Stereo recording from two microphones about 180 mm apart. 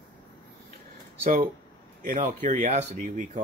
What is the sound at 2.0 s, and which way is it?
Speech, 45° right (ahead or behind).